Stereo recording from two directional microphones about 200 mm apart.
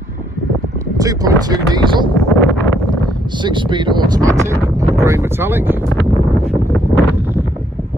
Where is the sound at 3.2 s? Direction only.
20° right (ahead or behind).